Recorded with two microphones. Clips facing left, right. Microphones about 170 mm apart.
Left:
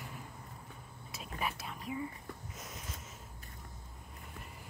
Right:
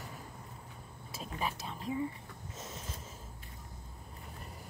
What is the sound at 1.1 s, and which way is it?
Speech, 30° right (ahead or behind).